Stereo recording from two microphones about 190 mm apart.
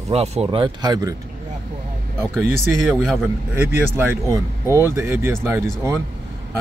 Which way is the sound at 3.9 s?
15° right (ahead or behind).